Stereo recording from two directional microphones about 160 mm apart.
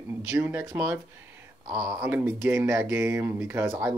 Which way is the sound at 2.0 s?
10° right (ahead or behind).